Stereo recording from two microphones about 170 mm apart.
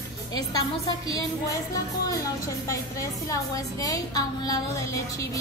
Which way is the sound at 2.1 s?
20° left (ahead or behind).